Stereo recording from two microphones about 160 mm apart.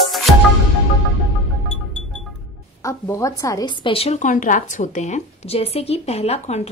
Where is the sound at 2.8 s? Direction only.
20° left (ahead or behind); by 4.2 s 35° left (ahead or behind).